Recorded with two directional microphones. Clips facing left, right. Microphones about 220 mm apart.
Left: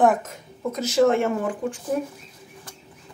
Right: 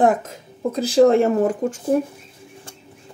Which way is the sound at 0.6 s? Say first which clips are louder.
Right 5 dB; 30° right (ahead or behind).